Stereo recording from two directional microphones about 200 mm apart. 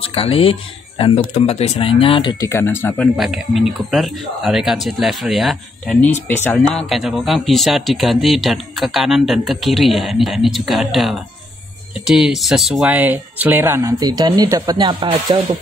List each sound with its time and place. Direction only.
0.0 s speech: 30° left (ahead or behind)
2.5 s speech: 10° left (ahead or behind)
3.2 s a man's voice: centre (ahead or behind); by 15.3 s 25° right (ahead or behind)